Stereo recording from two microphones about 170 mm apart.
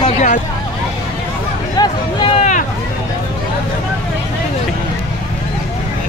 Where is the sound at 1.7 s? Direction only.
25° left (ahead or behind).